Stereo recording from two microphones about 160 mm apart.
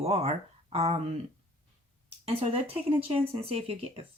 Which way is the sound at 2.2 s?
35° right (ahead or behind).